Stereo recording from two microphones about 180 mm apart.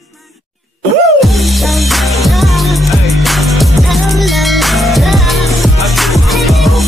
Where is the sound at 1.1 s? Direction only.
Centre (ahead or behind).